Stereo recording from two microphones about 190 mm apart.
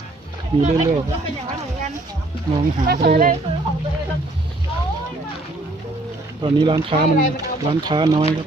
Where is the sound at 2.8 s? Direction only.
55° right (ahead or behind).